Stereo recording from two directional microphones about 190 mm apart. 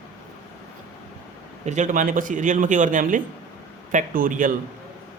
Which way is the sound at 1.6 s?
40° right (ahead or behind).